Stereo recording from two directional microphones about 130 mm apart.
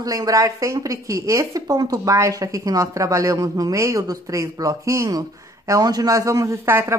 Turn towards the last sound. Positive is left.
turn(degrees=-20)  # may be behind; listen again after turning